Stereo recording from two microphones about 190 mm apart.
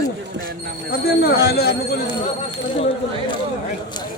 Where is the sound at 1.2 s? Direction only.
55° left (ahead or behind).